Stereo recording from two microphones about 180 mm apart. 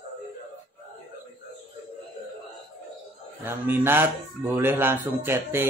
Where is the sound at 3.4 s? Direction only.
10° right (ahead or behind).